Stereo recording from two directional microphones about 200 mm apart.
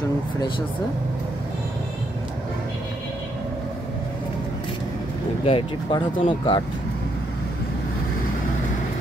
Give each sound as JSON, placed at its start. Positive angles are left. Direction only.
{"t": 5.4, "sound": "speech", "side_deg": 25}